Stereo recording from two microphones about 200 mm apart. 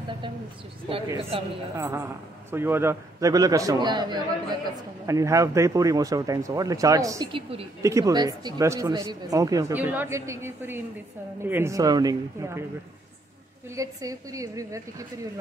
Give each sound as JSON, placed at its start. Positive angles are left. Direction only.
{"t": 0.8, "sound": "speech", "side_deg": -30}
{"t": 1.8, "sound": "speech", "side_deg": -15}
{"t": 13.7, "sound": "speech", "side_deg": -15}